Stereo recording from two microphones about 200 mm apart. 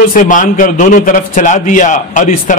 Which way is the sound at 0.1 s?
40° left (ahead or behind).